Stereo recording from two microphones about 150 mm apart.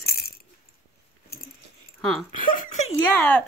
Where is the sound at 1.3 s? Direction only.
90° left.